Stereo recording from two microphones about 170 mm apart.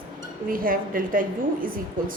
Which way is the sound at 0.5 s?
55° right (ahead or behind).